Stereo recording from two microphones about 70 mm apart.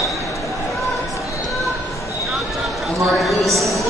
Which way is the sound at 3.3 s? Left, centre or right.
Centre.